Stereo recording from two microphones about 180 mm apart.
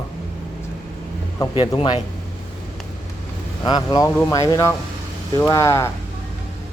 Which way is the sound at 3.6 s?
25° left (ahead or behind).